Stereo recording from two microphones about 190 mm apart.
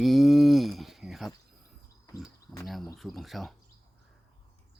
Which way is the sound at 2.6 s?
Centre (ahead or behind).